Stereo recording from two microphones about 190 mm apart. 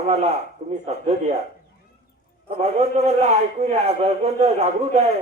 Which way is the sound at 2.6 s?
35° right (ahead or behind).